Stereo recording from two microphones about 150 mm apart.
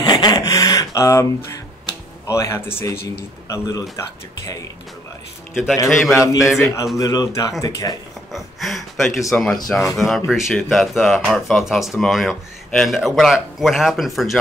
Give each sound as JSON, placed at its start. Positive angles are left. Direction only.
{"t": 0.0, "sound": "a sound", "side_deg": 25}
{"t": 3.4, "sound": "speech", "side_deg": 20}
{"t": 5.5, "sound": "a man's voice", "side_deg": 0}
{"t": 7.0, "sound": "speech", "side_deg": 25}
{"t": 8.3, "sound": "speech", "side_deg": 0}